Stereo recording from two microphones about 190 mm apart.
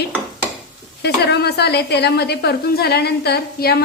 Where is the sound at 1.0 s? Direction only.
60° left (ahead or behind).